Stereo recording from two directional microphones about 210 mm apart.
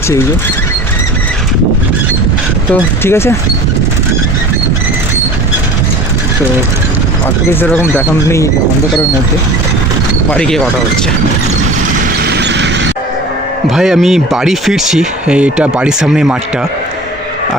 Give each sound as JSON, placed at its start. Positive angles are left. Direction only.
{"t": 3.0, "sound": "speech", "side_deg": 10}
{"t": 7.6, "sound": "speech", "side_deg": 10}
{"t": 10.3, "sound": "speech", "side_deg": 5}
{"t": 12.2, "sound": "a sound", "side_deg": -55}
{"t": 13.7, "sound": "speech", "side_deg": 0}